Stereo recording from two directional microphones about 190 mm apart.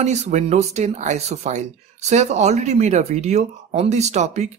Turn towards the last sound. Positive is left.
turn(degrees=-35)  # may be behind; listen again after turning